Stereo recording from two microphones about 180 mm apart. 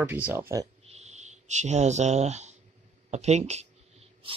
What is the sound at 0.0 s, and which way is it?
Speech, 10° right (ahead or behind).